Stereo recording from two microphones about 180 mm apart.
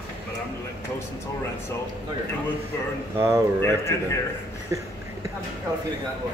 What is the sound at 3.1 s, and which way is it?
Speech, 15° right (ahead or behind).